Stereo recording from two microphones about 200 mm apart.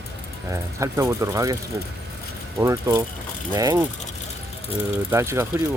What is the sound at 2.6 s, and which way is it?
Speech, 15° right (ahead or behind).